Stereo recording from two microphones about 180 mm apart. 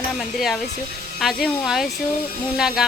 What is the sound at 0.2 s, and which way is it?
Speech, centre (ahead or behind).